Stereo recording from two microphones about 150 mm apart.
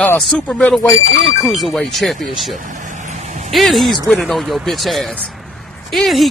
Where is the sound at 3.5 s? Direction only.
Centre (ahead or behind).